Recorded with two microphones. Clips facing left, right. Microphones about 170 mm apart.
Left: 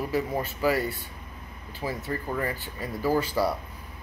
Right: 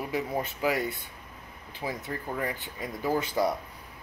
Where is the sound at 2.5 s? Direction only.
20° right (ahead or behind).